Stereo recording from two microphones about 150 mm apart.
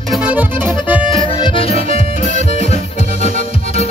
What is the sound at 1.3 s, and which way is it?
Accordion, 35° left (ahead or behind).